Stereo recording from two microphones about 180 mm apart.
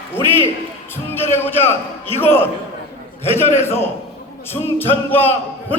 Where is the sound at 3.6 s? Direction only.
15° left (ahead or behind).